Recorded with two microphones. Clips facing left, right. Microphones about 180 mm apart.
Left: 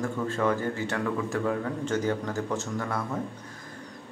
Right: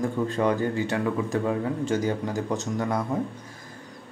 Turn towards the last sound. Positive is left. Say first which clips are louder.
# right 4 dB
turn(degrees=-15)  # may be behind; listen again after turning